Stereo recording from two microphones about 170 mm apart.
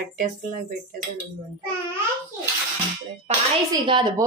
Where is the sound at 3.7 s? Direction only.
25° right (ahead or behind).